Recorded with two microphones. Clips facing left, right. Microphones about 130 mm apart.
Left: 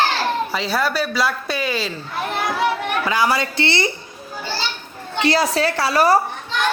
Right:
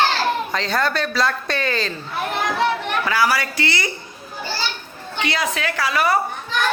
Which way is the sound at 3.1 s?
20° left (ahead or behind).